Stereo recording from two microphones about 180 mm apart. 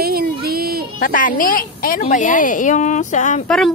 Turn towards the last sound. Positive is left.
turn(degrees=0)  # may be behind; listen again after turning